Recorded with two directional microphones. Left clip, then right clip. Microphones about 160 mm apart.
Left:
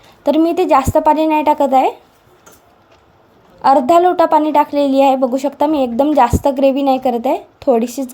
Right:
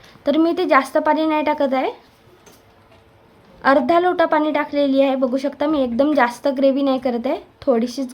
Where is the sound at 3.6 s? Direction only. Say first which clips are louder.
Left 5 dB; 15° left (ahead or behind).